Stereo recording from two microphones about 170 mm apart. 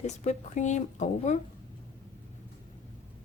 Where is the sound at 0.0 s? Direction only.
45° left (ahead or behind).